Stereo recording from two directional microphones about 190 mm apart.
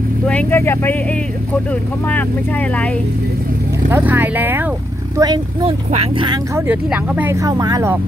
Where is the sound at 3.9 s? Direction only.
10° right (ahead or behind).